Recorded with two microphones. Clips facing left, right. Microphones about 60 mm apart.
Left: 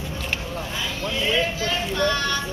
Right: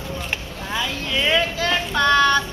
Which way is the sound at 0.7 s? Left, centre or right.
Right.